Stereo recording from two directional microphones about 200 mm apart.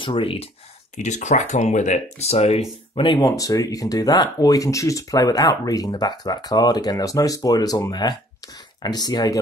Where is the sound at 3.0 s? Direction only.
20° left (ahead or behind).